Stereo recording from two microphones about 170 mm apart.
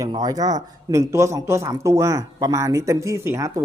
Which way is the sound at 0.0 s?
25° right (ahead or behind).